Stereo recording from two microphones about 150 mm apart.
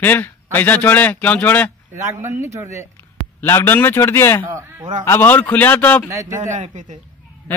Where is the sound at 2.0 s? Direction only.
20° right (ahead or behind).